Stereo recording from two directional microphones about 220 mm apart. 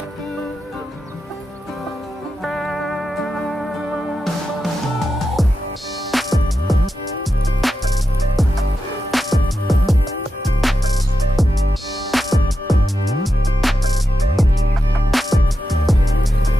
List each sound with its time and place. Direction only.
2.4 s music: centre (ahead or behind)
9.1 s music: centre (ahead or behind)
12.1 s music: centre (ahead or behind)